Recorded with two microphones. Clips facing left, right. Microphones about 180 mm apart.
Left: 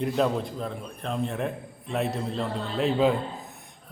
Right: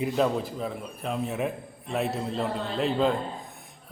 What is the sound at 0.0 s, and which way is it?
A man's voice, 5° right (ahead or behind).